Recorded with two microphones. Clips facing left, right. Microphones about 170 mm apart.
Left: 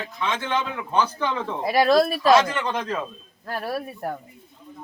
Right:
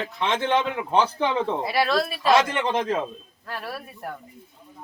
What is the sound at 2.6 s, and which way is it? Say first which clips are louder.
Speech: right 2 dB; 25° right (ahead or behind).